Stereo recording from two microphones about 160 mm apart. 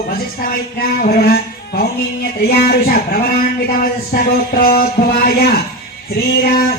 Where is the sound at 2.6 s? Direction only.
70° left (ahead or behind).